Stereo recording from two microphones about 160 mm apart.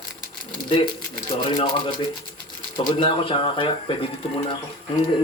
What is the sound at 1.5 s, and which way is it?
Speech, 30° left (ahead or behind).